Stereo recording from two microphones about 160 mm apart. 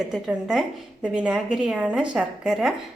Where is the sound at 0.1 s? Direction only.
5° right (ahead or behind).